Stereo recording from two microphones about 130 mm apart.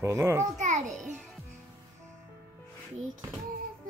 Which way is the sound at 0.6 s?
70° right (ahead or behind).